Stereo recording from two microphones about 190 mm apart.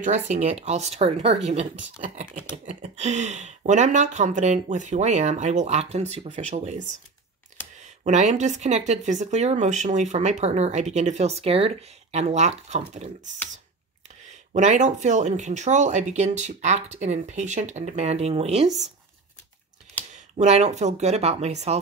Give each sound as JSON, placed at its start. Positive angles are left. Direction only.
{"t": 0.0, "sound": "speech", "side_deg": -35}
{"t": 8.0, "sound": "speech", "side_deg": -40}
{"t": 14.5, "sound": "speech", "side_deg": -40}
{"t": 20.3, "sound": "speech", "side_deg": -35}